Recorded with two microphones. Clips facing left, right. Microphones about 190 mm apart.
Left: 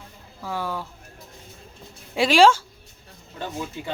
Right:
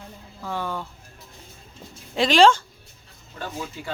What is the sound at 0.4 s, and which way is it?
Speech, 5° left (ahead or behind).